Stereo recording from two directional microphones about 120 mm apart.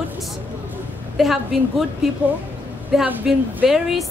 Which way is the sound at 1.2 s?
Centre (ahead or behind).